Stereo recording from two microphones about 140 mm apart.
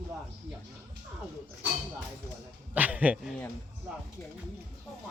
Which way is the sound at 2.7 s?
10° right (ahead or behind).